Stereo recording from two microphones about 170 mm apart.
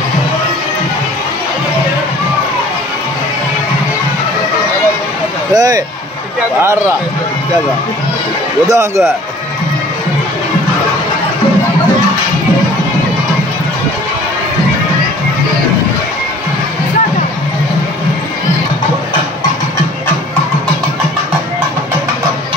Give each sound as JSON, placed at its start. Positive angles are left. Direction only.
{"t": 5.5, "sound": "speech", "side_deg": -25}
{"t": 8.6, "sound": "speech", "side_deg": -20}